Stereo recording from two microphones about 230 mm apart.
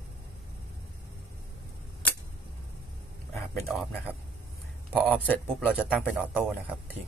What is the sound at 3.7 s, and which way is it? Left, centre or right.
Speech, centre.